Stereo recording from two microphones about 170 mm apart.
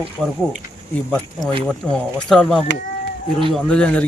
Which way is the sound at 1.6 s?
5° left (ahead or behind).